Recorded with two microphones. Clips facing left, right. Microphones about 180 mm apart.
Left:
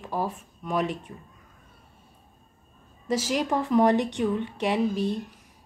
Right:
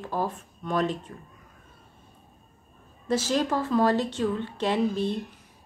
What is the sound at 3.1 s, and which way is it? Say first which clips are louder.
Speech: right 1 dB; 10° left (ahead or behind).